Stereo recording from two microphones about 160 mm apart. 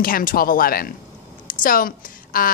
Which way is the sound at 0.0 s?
60° left (ahead or behind).